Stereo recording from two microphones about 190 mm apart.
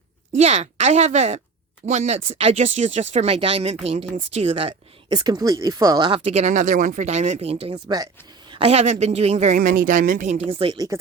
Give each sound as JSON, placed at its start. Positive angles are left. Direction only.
{"t": 0.3, "sound": "speech", "side_deg": -35}